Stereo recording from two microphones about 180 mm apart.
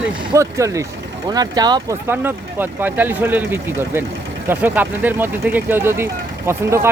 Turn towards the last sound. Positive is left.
turn(degrees=-15)  # may be behind; listen again after turning